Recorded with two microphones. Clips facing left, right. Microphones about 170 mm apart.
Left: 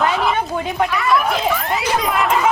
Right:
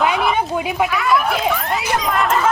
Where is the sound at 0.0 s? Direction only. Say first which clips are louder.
Right 1 dB; 5° right (ahead or behind).